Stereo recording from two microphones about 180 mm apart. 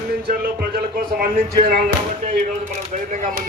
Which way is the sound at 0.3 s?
55° right (ahead or behind).